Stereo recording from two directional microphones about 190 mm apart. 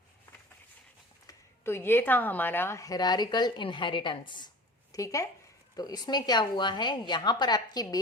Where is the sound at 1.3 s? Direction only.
15° left (ahead or behind).